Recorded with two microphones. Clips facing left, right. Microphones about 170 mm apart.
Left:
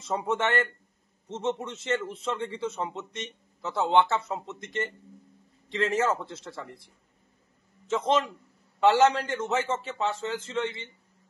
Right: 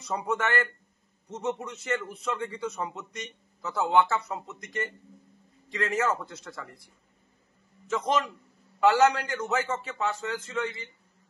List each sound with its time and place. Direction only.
0.0 s a man's voice: 25° left (ahead or behind)
7.8 s a man's voice: 25° left (ahead or behind)